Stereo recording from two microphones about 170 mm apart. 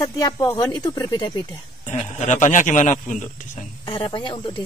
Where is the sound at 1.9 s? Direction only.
40° left (ahead or behind).